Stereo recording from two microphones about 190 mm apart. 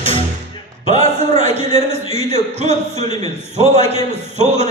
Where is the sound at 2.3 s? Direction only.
35° right (ahead or behind).